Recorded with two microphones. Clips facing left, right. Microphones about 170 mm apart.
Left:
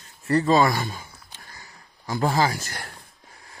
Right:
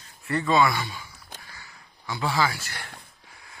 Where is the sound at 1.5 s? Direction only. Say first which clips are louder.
Left 1 dB; 40° left (ahead or behind).